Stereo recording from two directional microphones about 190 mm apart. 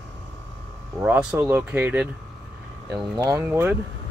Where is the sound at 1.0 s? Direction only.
5° right (ahead or behind).